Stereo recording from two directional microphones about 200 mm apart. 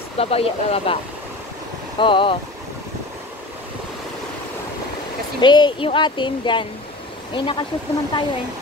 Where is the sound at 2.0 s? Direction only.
25° left (ahead or behind).